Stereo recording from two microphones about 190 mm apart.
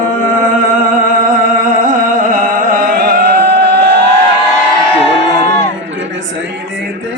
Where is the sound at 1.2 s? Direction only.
45° right (ahead or behind).